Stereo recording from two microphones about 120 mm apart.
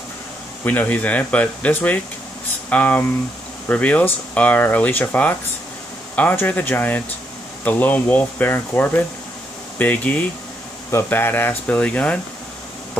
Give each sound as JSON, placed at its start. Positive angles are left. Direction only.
{"t": 0.7, "sound": "speech", "side_deg": 15}